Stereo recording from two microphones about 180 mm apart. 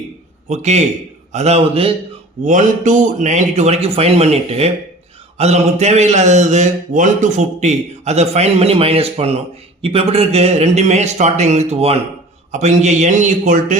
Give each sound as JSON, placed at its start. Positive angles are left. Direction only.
{"t": 0.4, "sound": "a man's voice", "side_deg": -40}
{"t": 2.4, "sound": "a man's voice", "side_deg": -45}